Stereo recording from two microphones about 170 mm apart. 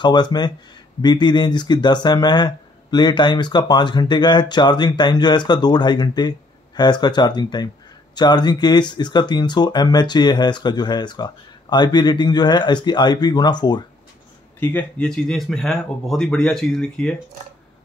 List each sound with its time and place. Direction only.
0.0 s speech: 25° left (ahead or behind)
14.6 s speech: 10° left (ahead or behind)